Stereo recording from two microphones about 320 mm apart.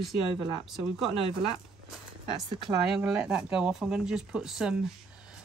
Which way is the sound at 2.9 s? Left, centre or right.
Centre.